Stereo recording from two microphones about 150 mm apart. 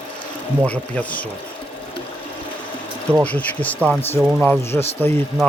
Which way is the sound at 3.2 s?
10° left (ahead or behind).